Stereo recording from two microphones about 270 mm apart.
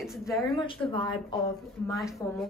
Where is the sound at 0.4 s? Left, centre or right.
Centre.